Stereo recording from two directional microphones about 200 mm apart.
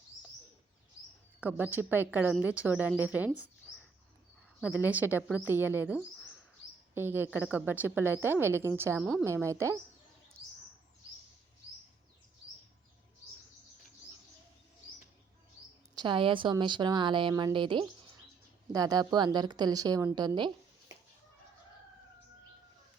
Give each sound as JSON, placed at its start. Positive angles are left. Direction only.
{"t": 1.4, "sound": "a woman's voice", "side_deg": -10}
{"t": 4.6, "sound": "a woman's voice", "side_deg": -10}
{"t": 16.0, "sound": "a woman's voice", "side_deg": -25}